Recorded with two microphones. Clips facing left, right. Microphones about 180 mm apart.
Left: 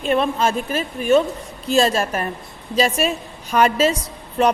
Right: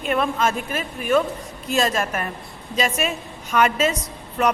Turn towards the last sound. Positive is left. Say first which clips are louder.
# left 3 dB
turn(degrees=30)  # may be behind; listen again after turning